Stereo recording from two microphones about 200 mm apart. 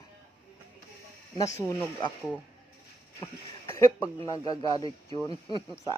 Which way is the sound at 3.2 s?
15° left (ahead or behind).